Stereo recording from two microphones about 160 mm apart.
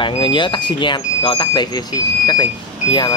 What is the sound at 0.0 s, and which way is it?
A man's voice, 30° left (ahead or behind).